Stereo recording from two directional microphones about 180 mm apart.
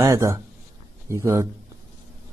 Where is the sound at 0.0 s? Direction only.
15° right (ahead or behind).